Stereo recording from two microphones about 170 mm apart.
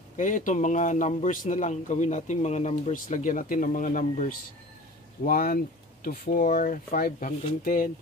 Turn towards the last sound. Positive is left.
turn(degrees=55)  # may be behind; listen again after turning